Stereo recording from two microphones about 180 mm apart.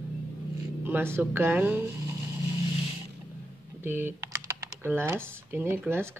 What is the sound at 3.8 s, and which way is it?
Speech, 10° right (ahead or behind).